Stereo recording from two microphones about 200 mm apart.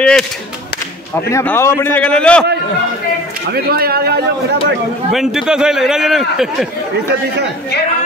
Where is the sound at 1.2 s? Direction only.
15° left (ahead or behind).